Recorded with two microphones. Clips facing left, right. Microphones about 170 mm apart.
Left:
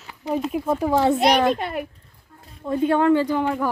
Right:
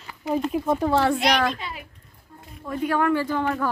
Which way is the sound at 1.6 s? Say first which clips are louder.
Left 9 dB; 55° left (ahead or behind).